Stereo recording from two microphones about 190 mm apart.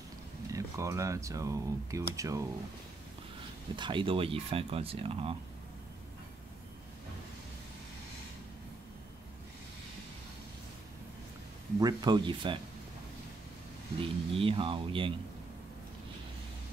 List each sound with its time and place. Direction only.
0.5 s speech: 15° right (ahead or behind)
3.7 s speech: 25° right (ahead or behind)
11.8 s speech: 20° right (ahead or behind)
13.9 s speech: 30° right (ahead or behind)